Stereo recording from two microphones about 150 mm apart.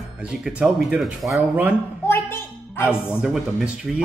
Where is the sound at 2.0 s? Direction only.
15° left (ahead or behind).